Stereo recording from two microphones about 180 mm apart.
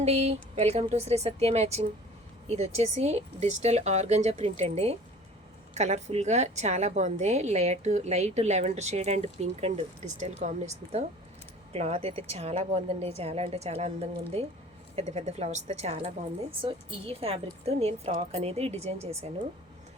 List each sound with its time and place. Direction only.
0.0 s a woman's voice: 35° right (ahead or behind)
14.9 s a woman's voice: 40° right (ahead or behind)